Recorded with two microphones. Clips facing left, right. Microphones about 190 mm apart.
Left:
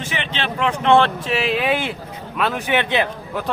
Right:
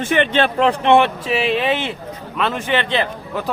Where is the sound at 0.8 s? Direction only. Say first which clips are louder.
Left 2 dB; 20° right (ahead or behind).